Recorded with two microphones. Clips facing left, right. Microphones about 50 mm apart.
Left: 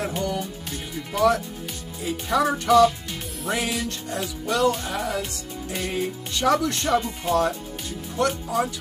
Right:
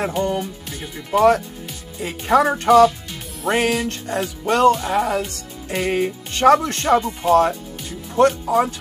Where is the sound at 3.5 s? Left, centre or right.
Right.